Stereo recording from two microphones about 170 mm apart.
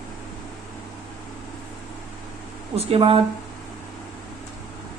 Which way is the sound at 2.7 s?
35° right (ahead or behind).